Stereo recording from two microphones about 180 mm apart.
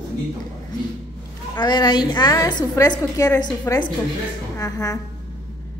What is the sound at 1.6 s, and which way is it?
A woman's voice, 25° left (ahead or behind).